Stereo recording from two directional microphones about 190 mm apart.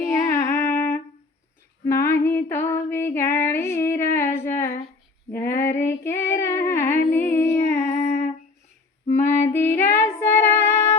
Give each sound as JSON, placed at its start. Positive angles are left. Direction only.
{"t": 0.0, "sound": "female singing", "side_deg": 15}
{"t": 7.1, "sound": "music", "side_deg": 15}
{"t": 7.9, "sound": "humming", "side_deg": 35}
{"t": 9.2, "sound": "female singing", "side_deg": 15}